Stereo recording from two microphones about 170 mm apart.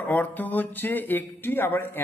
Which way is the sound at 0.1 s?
10° left (ahead or behind).